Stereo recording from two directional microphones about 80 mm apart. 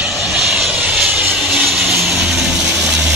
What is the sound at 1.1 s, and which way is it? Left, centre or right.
Vehicle, centre.